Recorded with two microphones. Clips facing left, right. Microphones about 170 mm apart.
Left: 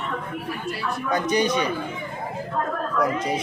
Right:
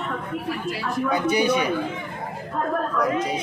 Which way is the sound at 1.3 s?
10° right (ahead or behind).